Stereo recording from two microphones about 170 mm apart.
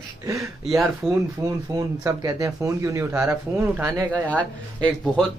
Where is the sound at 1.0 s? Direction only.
20° right (ahead or behind).